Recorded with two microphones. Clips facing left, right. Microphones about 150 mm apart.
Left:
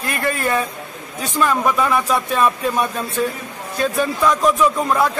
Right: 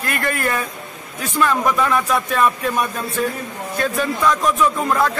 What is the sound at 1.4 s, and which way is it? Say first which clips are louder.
Speech: even; 10° left (ahead or behind).